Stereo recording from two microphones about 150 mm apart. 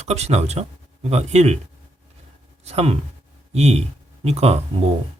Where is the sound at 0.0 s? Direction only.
45° right (ahead or behind).